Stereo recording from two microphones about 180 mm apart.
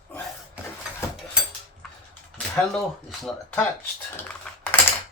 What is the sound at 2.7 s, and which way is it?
Speech, centre (ahead or behind).